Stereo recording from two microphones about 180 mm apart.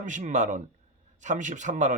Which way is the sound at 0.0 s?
45° right (ahead or behind).